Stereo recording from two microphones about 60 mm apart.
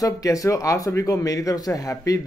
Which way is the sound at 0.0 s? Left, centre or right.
Left.